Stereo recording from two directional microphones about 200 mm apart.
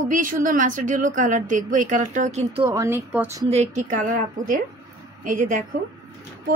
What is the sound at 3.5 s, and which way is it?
A woman's voice, 35° right (ahead or behind).